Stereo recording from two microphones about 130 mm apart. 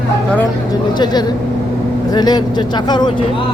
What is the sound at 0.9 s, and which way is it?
Speech, 35° left (ahead or behind).